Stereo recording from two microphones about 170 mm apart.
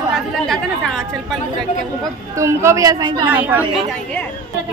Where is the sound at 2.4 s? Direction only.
15° right (ahead or behind).